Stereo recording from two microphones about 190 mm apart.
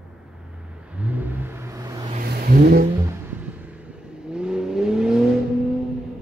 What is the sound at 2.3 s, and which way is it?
Vehicle, 50° right (ahead or behind).